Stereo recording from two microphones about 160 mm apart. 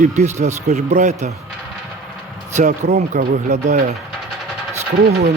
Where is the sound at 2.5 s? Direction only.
45° right (ahead or behind).